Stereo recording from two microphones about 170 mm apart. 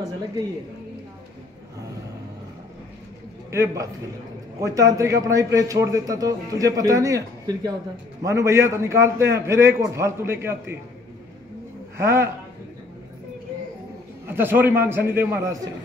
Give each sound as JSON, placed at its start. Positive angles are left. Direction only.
{"t": 3.5, "sound": "a man's voice", "side_deg": -15}
{"t": 12.0, "sound": "a man's voice", "side_deg": -15}
{"t": 14.2, "sound": "a man's voice", "side_deg": -15}